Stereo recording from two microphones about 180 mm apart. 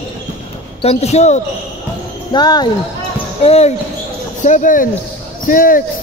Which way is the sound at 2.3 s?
25° left (ahead or behind).